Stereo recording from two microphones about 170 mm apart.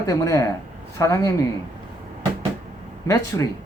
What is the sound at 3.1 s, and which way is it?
Speech, 20° left (ahead or behind).